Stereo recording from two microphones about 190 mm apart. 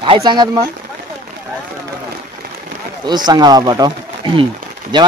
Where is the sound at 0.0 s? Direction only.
25° right (ahead or behind).